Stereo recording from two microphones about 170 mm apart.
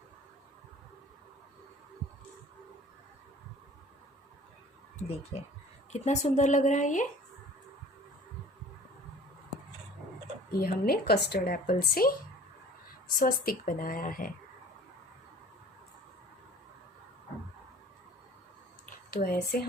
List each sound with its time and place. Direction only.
4.9 s speech: 40° left (ahead or behind)
10.6 s a woman's voice: 60° left (ahead or behind)
13.1 s a woman's voice: 60° left (ahead or behind)
18.9 s a sound: 60° left (ahead or behind)